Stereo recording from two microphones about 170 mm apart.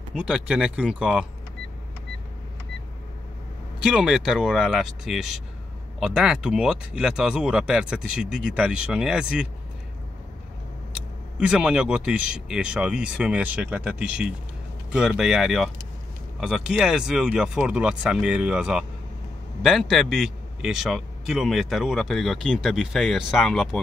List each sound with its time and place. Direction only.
0.1 s a man's voice: 5° right (ahead or behind)
3.8 s a man's voice: 5° right (ahead or behind)
11.3 s a man's voice: 5° right (ahead or behind)